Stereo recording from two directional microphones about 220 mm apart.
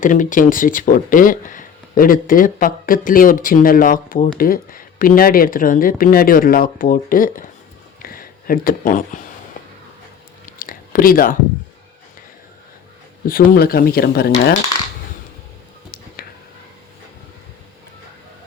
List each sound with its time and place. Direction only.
0.0 s speech: 35° left (ahead or behind)
10.4 s a sound: 40° left (ahead or behind)
13.5 s speech: 45° left (ahead or behind)